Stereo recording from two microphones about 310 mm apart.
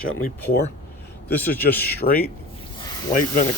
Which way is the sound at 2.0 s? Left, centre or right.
Left.